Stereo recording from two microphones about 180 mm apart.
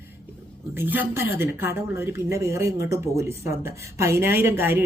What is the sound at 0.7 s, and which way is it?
Speech, 10° right (ahead or behind).